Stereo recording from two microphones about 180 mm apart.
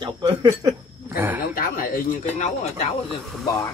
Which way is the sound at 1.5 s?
50° left (ahead or behind).